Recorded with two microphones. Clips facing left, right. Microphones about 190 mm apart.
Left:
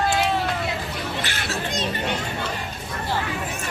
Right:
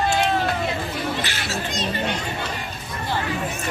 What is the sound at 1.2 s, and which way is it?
Chatter, 55° left (ahead or behind).